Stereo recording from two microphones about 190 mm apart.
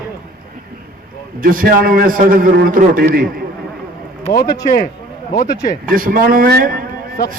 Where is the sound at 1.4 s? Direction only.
45° right (ahead or behind).